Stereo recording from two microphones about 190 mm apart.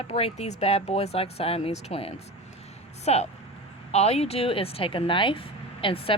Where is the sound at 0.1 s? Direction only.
30° left (ahead or behind).